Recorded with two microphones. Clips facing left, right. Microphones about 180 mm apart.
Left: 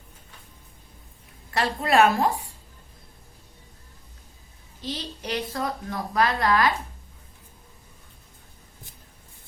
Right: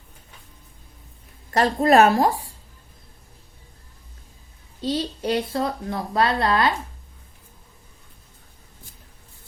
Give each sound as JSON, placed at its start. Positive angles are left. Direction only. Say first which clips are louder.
{"t": 1.5, "sound": "a woman's voice", "louder": "right 7 dB", "side_deg": -40}
{"t": 4.8, "sound": "a woman's voice", "louder": "right 9 dB", "side_deg": -30}